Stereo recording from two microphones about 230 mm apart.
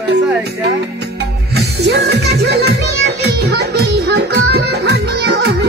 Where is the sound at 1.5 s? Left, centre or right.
Right.